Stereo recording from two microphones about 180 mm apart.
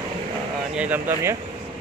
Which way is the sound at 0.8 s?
10° right (ahead or behind).